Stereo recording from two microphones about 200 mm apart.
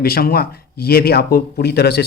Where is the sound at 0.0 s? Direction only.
50° left (ahead or behind).